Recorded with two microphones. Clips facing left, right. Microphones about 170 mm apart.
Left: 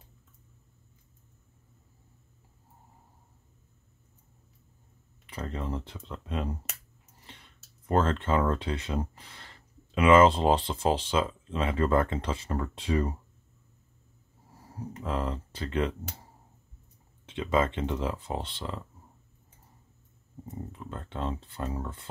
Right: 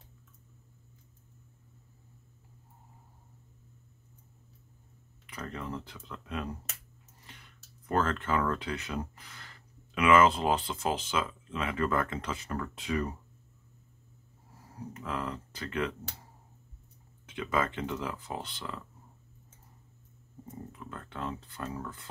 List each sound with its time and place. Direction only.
5.2 s speech: 30° left (ahead or behind)
15.0 s speech: 30° left (ahead or behind)
17.3 s speech: 25° left (ahead or behind)
20.7 s speech: 30° left (ahead or behind)